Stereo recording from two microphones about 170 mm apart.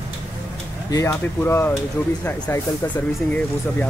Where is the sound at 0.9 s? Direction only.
15° left (ahead or behind).